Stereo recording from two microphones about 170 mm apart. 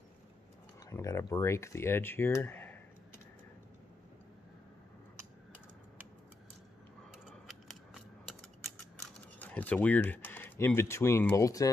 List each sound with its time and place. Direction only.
0.8 s speech: 15° left (ahead or behind)
7.1 s mechanisms: centre (ahead or behind)
9.4 s speech: 10° left (ahead or behind)